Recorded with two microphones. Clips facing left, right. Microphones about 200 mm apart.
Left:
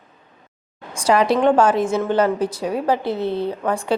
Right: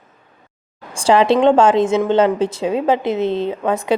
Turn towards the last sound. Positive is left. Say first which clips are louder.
# right 3 dB
turn(degrees=-20)  # may be behind; listen again after turning